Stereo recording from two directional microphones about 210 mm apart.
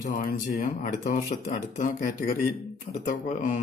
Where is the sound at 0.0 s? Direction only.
40° left (ahead or behind).